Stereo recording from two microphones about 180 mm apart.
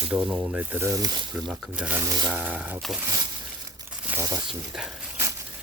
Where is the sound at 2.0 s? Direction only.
20° right (ahead or behind).